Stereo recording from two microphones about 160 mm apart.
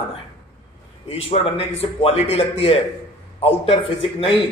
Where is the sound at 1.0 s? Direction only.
35° left (ahead or behind).